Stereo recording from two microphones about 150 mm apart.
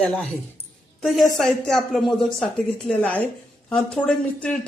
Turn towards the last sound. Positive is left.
turn(degrees=5)  # may be behind; listen again after turning